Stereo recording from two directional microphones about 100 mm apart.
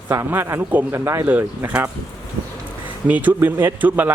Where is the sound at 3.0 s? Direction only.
15° right (ahead or behind).